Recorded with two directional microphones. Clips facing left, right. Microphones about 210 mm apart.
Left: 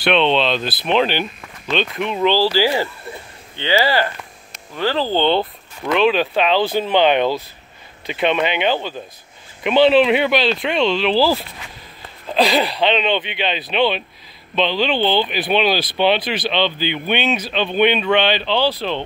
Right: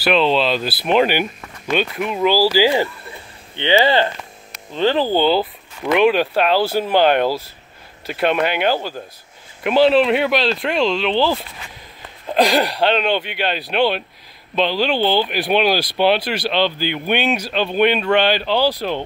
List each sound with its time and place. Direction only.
0.0 s speech: 5° right (ahead or behind)
12.4 s speech: 15° right (ahead or behind)